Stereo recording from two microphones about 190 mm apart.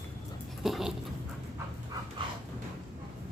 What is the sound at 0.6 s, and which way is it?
Dog, centre (ahead or behind).